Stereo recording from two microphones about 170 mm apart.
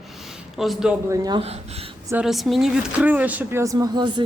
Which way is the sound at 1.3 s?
35° right (ahead or behind).